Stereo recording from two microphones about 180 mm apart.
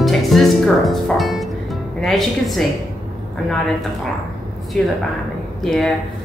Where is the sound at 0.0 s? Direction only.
Centre (ahead or behind).